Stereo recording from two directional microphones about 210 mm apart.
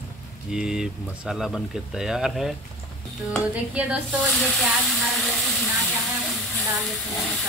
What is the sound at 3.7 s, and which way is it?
Speech, 5° right (ahead or behind).